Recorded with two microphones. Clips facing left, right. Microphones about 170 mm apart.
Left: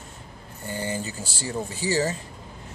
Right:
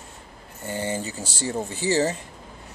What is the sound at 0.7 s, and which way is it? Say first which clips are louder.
Speech: right 2 dB; 20° right (ahead or behind).